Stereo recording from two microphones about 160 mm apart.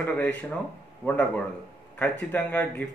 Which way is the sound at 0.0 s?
10° left (ahead or behind).